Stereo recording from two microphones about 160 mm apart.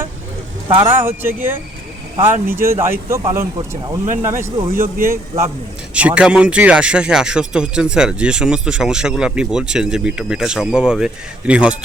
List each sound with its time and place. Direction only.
0.8 s speech: 15° right (ahead or behind)
5.9 s speech: 10° right (ahead or behind)